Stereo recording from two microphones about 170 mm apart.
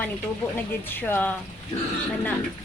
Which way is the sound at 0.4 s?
10° left (ahead or behind).